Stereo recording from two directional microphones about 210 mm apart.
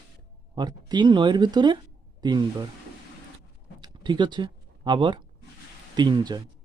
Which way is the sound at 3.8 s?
20° right (ahead or behind).